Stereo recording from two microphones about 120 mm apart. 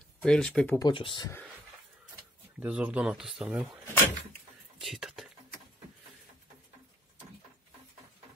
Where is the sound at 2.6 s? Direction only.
10° right (ahead or behind).